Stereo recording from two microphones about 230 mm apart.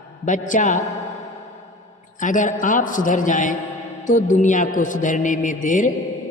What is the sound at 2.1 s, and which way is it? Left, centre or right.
A man's voice, left.